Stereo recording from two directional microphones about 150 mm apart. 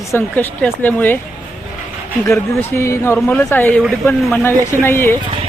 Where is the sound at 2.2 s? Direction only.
20° left (ahead or behind).